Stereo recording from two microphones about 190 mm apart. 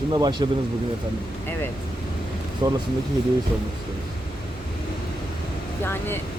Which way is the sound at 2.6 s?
20° right (ahead or behind).